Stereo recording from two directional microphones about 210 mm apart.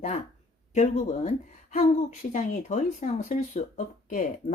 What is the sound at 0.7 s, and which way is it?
Speech, 35° left (ahead or behind).